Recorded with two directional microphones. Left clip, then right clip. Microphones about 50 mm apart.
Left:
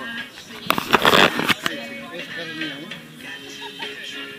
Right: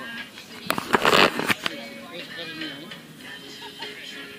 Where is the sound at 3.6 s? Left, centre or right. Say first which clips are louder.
Left 5 dB; right.